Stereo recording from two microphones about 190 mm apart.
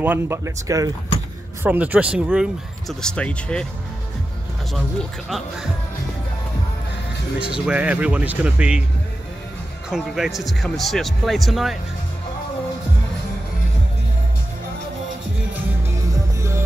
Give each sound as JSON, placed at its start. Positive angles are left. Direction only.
{"t": 0.0, "sound": "speech", "side_deg": -10}
{"t": 7.3, "sound": "speech", "side_deg": -5}
{"t": 9.8, "sound": "speech", "side_deg": 0}
{"t": 16.3, "sound": "music", "side_deg": -15}